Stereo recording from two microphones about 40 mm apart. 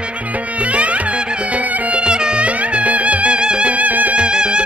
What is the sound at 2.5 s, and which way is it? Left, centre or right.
Music, right.